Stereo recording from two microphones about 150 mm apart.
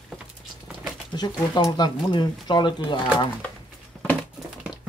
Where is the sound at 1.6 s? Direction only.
25° left (ahead or behind).